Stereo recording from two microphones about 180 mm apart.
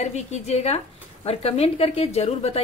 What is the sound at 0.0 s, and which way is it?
A woman's voice, 40° left (ahead or behind).